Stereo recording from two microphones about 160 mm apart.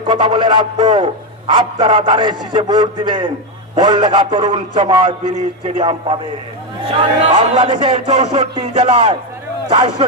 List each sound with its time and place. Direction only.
0.1 s a man's voice: 30° right (ahead or behind)